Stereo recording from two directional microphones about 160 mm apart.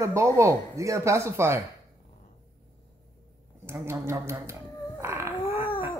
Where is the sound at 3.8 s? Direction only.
15° right (ahead or behind).